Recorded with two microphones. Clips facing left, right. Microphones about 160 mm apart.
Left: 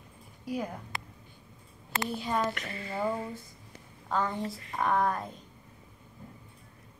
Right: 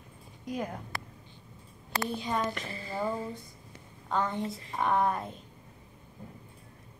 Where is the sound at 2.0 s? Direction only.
5° left (ahead or behind).